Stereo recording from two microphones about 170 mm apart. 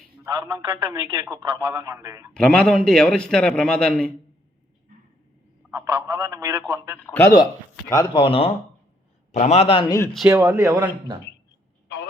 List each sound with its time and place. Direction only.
0.3 s a woman's voice: 20° right (ahead or behind)
2.3 s a man's voice: 5° left (ahead or behind)
5.7 s speech: 15° right (ahead or behind)
7.0 s speech: 15° left (ahead or behind); by 9.8 s 35° left (ahead or behind)
10.1 s a man's voice: centre (ahead or behind)
10.3 s speech: 15° right (ahead or behind)